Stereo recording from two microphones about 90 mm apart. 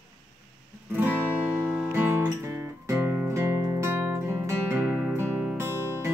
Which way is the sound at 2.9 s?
25° right (ahead or behind).